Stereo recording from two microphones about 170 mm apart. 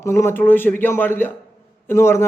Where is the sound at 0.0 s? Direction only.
15° left (ahead or behind).